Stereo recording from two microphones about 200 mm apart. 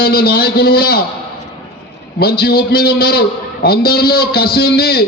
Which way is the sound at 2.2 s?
50° left (ahead or behind).